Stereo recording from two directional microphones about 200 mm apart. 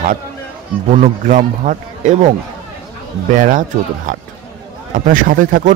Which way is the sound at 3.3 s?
40° right (ahead or behind).